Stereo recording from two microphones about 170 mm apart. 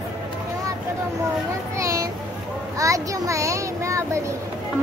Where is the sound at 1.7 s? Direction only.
20° right (ahead or behind).